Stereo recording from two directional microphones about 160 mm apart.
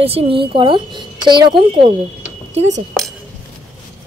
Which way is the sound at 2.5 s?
45° right (ahead or behind).